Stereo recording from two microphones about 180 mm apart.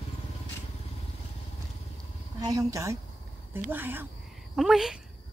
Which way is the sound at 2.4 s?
20° right (ahead or behind).